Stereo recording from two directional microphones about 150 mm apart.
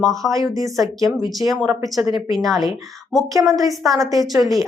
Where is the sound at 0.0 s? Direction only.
Centre (ahead or behind).